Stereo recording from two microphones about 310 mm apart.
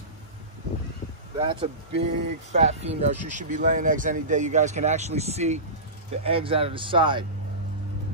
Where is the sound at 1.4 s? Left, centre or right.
Centre.